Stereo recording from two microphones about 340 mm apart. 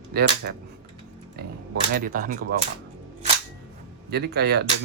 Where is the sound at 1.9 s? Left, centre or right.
Right.